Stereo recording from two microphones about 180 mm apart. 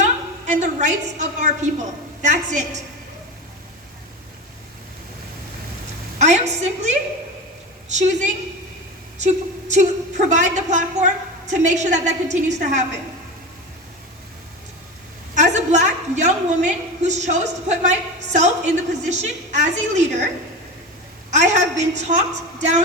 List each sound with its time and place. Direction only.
0.0 s a woman's voice: 40° right (ahead or behind)
6.1 s a woman's voice: 40° right (ahead or behind)
9.1 s a woman's voice: 40° right (ahead or behind)
15.4 s a woman's voice: 40° right (ahead or behind)
21.2 s a woman's voice: 40° right (ahead or behind)